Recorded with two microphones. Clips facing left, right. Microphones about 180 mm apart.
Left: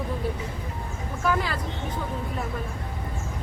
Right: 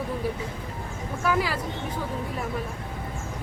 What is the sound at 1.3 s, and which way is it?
Speech, 5° right (ahead or behind).